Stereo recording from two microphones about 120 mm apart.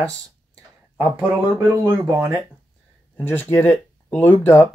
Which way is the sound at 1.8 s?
25° right (ahead or behind).